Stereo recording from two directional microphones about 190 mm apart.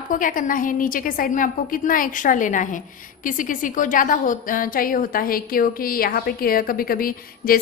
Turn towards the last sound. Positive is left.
turn(degrees=50)  # may be behind; listen again after turning